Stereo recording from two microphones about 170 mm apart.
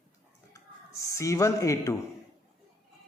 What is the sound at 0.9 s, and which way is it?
Speech, 20° left (ahead or behind).